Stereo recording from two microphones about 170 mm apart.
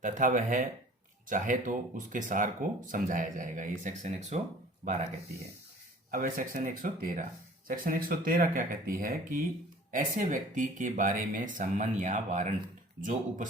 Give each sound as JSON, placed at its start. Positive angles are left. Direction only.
{"t": 0.0, "sound": "speech", "side_deg": -50}
{"t": 6.1, "sound": "speech", "side_deg": -55}